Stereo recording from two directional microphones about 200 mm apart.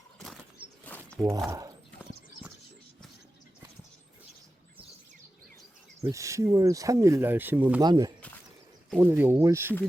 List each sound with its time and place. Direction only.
0.9 s a sound: 10° left (ahead or behind)
1.5 s speech: 15° right (ahead or behind)
6.0 s speech: 15° right (ahead or behind)